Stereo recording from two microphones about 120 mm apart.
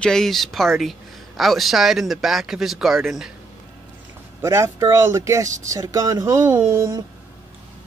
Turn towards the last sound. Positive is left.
turn(degrees=-35)  # may be behind; listen again after turning